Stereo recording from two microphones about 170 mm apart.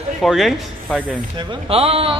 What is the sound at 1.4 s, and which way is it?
Speech, 35° right (ahead or behind).